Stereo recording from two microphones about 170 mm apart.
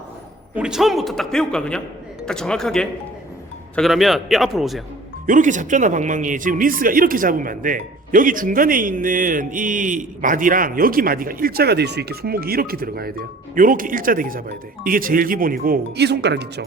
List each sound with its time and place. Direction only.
0.5 s a man's voice: 5° right (ahead or behind)
5.2 s speech: 50° right (ahead or behind); by 16.6 s 80° right